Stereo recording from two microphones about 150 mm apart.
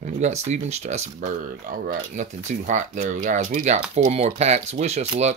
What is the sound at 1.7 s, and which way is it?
Speech, 65° right (ahead or behind).